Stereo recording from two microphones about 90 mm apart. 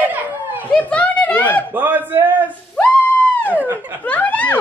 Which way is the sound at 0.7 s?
15° left (ahead or behind).